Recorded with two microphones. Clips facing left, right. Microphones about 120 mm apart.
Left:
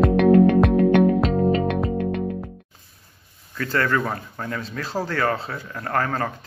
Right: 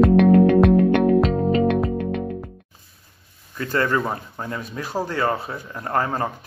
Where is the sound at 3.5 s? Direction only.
20° right (ahead or behind).